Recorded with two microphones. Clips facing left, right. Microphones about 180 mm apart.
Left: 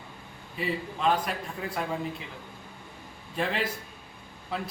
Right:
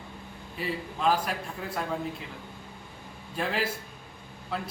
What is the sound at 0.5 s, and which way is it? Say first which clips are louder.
Speech: left 2 dB; centre (ahead or behind).